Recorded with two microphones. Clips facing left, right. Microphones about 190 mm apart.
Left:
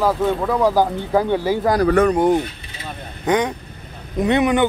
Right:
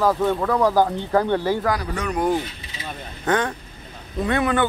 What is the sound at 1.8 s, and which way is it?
Speech, 60° left (ahead or behind).